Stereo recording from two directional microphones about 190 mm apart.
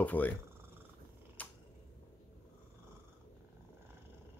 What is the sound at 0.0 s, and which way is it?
Speech, 10° left (ahead or behind).